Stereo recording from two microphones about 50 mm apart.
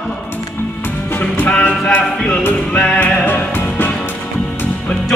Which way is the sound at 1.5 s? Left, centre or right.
Left.